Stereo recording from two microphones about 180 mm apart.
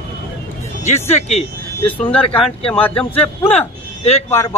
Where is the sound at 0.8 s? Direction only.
40° left (ahead or behind).